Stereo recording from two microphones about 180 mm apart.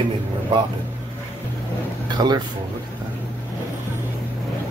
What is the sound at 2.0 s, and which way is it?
Speech, 25° right (ahead or behind).